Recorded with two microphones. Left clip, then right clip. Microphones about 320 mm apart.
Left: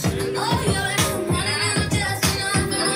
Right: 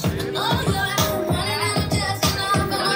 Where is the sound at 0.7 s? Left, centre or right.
Centre.